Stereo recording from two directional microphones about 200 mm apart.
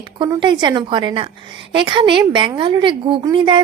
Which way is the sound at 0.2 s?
25° right (ahead or behind).